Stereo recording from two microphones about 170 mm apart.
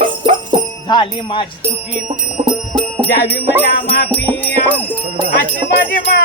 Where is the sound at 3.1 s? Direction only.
70° left (ahead or behind).